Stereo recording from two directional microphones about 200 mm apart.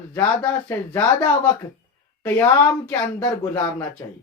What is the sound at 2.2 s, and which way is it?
Speech, 15° left (ahead or behind).